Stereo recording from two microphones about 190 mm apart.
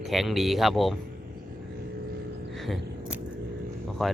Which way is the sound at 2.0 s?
55° right (ahead or behind).